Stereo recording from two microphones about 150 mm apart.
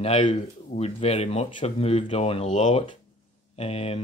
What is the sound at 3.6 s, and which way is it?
Speech, 40° left (ahead or behind).